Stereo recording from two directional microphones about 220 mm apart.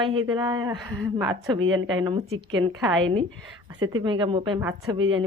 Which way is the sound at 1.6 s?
65° right (ahead or behind).